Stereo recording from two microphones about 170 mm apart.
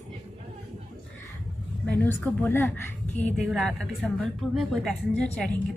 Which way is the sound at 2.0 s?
15° left (ahead or behind).